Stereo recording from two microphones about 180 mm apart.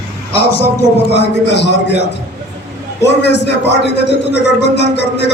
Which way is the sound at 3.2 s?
70° left (ahead or behind).